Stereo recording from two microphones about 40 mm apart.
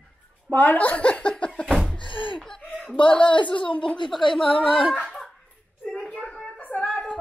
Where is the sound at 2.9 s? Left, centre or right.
Left.